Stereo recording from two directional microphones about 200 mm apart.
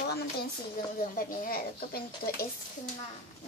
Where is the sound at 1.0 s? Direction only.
45° left (ahead or behind).